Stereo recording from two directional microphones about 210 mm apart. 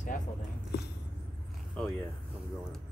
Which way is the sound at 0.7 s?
55° left (ahead or behind).